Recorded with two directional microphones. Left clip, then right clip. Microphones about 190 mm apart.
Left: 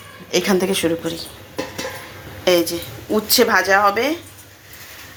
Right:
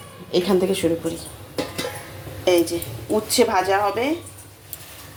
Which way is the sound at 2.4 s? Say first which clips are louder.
Left 2 dB; centre (ahead or behind).